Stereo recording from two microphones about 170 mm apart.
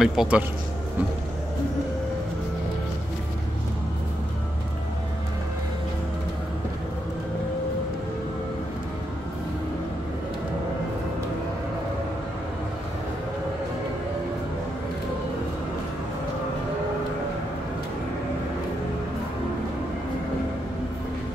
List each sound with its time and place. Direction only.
0.0 s a man's voice: 5° right (ahead or behind)